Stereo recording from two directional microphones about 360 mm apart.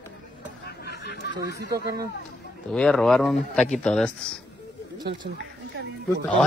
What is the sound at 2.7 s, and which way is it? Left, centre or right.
Speech, centre.